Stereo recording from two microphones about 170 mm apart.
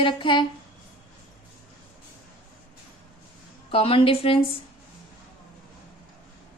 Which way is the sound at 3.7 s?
30° left (ahead or behind).